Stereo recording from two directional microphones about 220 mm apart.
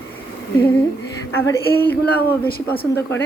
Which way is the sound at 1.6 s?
45° left (ahead or behind).